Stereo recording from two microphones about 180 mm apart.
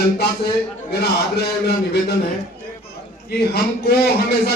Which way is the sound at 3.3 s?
60° left (ahead or behind).